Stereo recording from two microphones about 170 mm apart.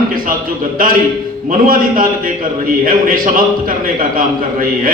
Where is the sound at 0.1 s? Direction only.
55° right (ahead or behind).